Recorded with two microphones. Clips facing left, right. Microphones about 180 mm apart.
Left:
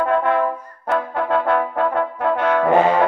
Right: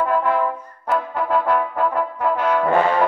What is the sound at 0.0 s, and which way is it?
Brass instrument, 60° left (ahead or behind).